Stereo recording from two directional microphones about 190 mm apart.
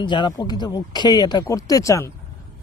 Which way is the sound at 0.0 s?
25° left (ahead or behind).